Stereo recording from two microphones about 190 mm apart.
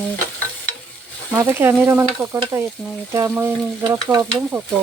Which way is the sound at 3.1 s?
15° right (ahead or behind).